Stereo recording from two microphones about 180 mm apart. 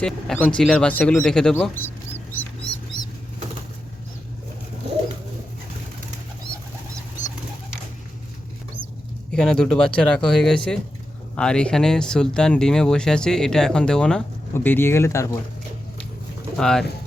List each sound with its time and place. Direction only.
0.0 s speech: 5° left (ahead or behind)
7.2 s bird: 45° left (ahead or behind)
9.3 s speech: 5° left (ahead or behind)
16.6 s speech: 5° left (ahead or behind)